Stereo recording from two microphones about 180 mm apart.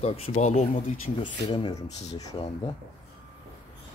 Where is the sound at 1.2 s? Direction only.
25° left (ahead or behind).